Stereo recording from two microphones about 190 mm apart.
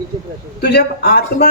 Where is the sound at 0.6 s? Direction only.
55° left (ahead or behind).